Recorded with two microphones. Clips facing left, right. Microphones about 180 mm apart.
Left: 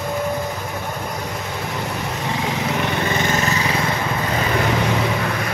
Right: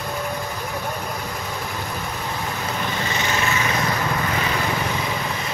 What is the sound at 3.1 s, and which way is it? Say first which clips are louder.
Lawn mower: left 3 dB; 50° left (ahead or behind).